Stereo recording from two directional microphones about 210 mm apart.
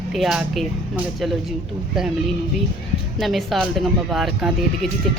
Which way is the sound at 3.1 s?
Centre (ahead or behind).